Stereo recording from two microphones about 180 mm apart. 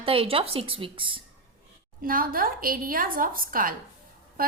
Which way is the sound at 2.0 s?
50° right (ahead or behind).